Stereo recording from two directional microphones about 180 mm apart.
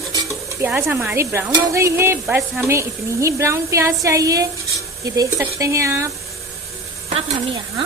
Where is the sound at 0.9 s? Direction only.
15° right (ahead or behind).